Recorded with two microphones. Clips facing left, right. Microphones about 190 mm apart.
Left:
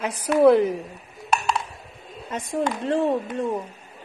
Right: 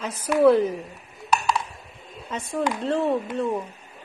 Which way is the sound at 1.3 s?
25° left (ahead or behind).